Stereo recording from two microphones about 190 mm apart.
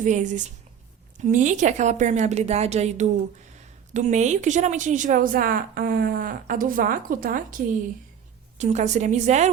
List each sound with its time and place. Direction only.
0.0 s a woman's voice: 40° right (ahead or behind)